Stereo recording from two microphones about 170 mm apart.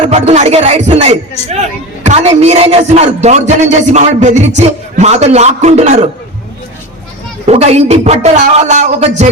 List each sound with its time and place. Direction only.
0.0 s a man's voice: 40° right (ahead or behind)
7.4 s a man's voice: 40° right (ahead or behind)